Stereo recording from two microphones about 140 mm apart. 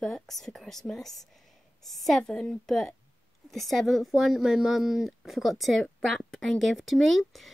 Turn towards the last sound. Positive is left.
turn(degrees=0)  # may be behind; listen again after turning